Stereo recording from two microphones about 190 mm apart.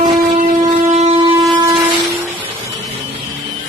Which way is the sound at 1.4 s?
20° right (ahead or behind).